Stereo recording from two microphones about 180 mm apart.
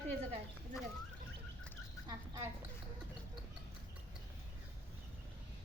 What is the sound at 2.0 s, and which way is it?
Speech, 20° right (ahead or behind).